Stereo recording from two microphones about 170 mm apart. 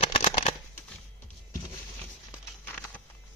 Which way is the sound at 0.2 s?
35° left (ahead or behind).